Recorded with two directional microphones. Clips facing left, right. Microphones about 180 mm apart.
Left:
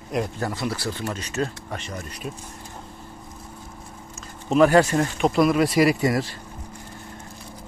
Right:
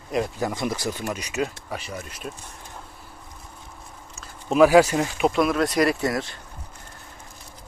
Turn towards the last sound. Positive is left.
turn(degrees=0)  # may be behind; listen again after turning